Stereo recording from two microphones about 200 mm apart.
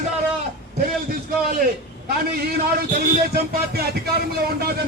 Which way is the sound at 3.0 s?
50° right (ahead or behind).